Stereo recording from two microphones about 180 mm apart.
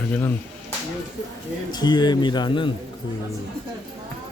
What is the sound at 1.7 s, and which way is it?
Speech, 25° left (ahead or behind).